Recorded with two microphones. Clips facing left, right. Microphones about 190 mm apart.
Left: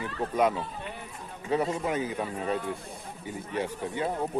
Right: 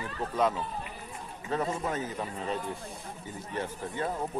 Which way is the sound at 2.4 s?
60° left (ahead or behind).